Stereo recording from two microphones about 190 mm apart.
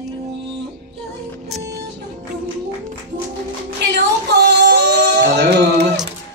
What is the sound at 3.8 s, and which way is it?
Music, 60° right (ahead or behind).